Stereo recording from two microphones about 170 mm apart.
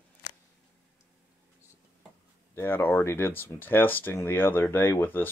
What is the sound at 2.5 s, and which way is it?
Speech, 10° left (ahead or behind).